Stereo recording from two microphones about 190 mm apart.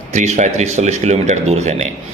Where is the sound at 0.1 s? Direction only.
35° right (ahead or behind).